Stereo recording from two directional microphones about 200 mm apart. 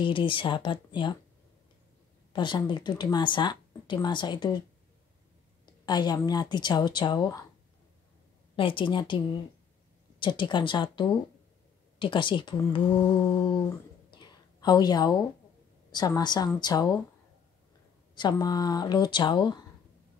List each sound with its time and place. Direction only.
0.0 s speech: 25° left (ahead or behind)
2.3 s speech: 25° left (ahead or behind)
5.9 s speech: 20° left (ahead or behind)
8.5 s speech: 25° left (ahead or behind)
14.1 s a sound: 20° left (ahead or behind)
15.9 s speech: 20° left (ahead or behind)
18.1 s speech: 20° left (ahead or behind)